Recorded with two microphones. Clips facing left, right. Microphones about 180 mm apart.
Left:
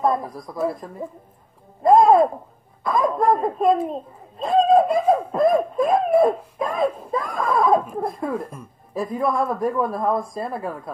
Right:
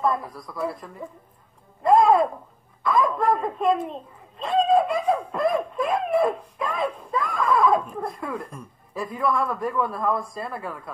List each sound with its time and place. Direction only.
0.0 s speech: 40° left (ahead or behind)
1.8 s a sound: 40° left (ahead or behind)
2.8 s speech: 40° left (ahead or behind)